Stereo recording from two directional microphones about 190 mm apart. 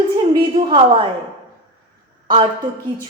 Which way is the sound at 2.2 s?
25° right (ahead or behind).